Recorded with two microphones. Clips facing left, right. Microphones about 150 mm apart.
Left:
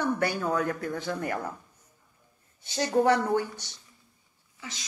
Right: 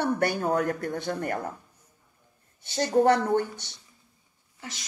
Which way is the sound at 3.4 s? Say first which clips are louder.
Right 2 dB; 55° right (ahead or behind).